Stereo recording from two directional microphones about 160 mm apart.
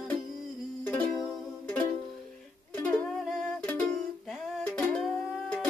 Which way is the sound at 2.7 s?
10° left (ahead or behind).